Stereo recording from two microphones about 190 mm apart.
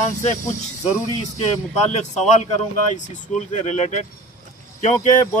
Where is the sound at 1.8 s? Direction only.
35° left (ahead or behind).